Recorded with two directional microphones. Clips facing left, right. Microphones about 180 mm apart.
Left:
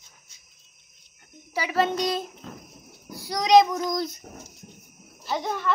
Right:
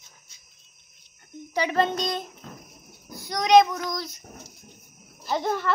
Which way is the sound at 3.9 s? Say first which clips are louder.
Left 5 dB; 50° left (ahead or behind).